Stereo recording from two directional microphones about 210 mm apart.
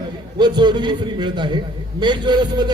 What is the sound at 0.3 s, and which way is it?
A man's voice, 20° right (ahead or behind).